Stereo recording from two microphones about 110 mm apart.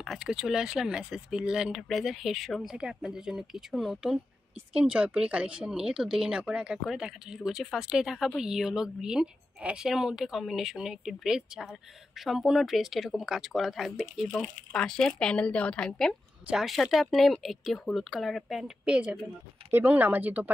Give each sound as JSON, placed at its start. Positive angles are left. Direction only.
{"t": 0.0, "sound": "speech", "side_deg": -5}
{"t": 14.3, "sound": "speech", "side_deg": 10}